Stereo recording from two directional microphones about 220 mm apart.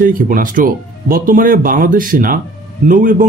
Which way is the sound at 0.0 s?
40° right (ahead or behind).